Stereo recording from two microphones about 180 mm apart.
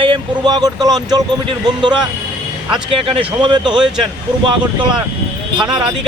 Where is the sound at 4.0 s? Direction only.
25° right (ahead or behind).